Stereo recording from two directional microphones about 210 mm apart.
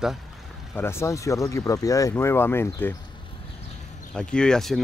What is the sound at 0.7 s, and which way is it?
Speech, 10° left (ahead or behind).